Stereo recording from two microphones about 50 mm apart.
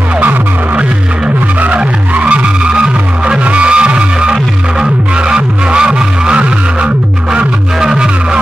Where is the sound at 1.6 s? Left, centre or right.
Right.